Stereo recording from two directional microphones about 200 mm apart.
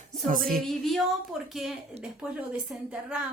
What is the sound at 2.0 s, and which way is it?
Speech, 5° right (ahead or behind).